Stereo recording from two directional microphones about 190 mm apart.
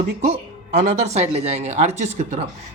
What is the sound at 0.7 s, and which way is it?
Speech, 35° right (ahead or behind).